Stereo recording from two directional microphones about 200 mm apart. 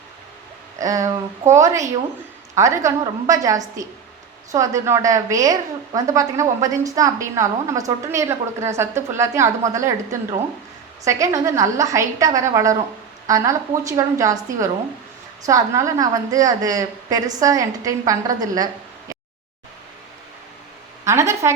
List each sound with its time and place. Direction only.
0.8 s a woman's voice: 15° right (ahead or behind)
21.0 s a woman's voice: 15° right (ahead or behind)